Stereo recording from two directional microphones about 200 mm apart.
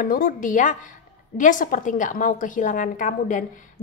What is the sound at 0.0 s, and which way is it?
A woman's voice, 45° left (ahead or behind).